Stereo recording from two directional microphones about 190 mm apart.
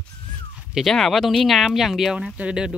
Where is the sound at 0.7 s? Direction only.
Centre (ahead or behind).